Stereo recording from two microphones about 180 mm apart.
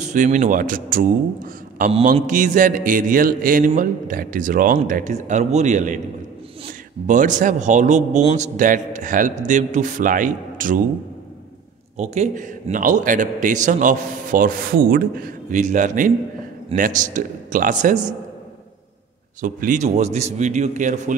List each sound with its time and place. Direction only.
0.0 s a man's voice: 45° right (ahead or behind)
7.1 s a man's voice: 45° right (ahead or behind)
12.0 s a man's voice: 40° right (ahead or behind)
19.4 s a man's voice: 45° right (ahead or behind)